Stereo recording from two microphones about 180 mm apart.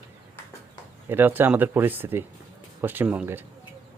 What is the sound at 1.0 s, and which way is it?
Speech, 10° right (ahead or behind).